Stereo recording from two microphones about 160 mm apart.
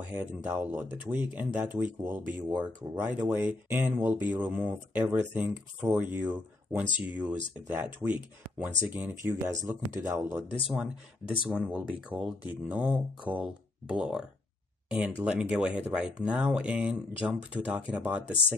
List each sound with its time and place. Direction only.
0.1 s speech: 15° right (ahead or behind)
10.7 s speech: 5° right (ahead or behind)